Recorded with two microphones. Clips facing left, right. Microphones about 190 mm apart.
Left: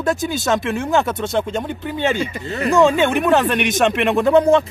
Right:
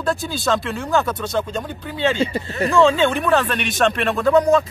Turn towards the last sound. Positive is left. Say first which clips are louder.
# left 2 dB
turn(degrees=25)  # may be behind; listen again after turning